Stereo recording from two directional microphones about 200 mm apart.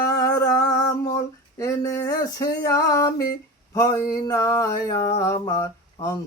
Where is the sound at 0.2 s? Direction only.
15° left (ahead or behind).